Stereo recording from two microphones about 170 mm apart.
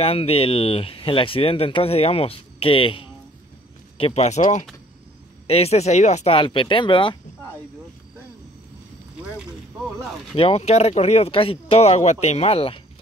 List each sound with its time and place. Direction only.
0.0 s speech: 35° left (ahead or behind)
5.5 s speech: 35° left (ahead or behind)
10.3 s speech: 35° left (ahead or behind)